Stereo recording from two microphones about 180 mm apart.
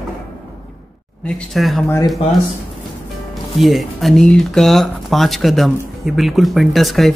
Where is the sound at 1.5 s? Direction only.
Centre (ahead or behind).